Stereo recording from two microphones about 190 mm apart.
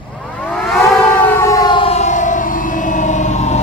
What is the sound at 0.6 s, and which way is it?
Civil defense siren, centre (ahead or behind).